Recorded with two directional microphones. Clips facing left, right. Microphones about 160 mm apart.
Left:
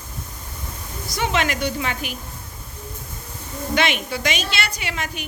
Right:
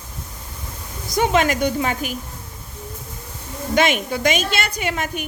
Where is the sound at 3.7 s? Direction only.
45° right (ahead or behind).